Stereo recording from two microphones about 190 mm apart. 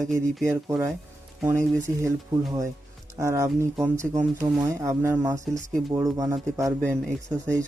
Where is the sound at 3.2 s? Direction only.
15° right (ahead or behind).